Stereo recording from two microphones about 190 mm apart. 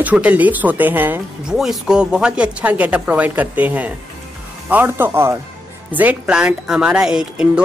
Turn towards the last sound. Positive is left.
turn(degrees=-5)  # may be behind; listen again after turning